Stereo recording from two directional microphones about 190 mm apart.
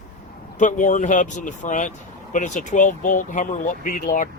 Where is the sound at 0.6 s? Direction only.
40° left (ahead or behind).